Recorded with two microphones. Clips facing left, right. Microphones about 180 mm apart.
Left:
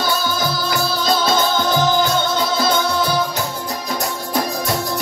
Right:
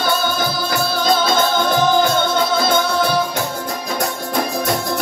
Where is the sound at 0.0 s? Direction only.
55° right (ahead or behind).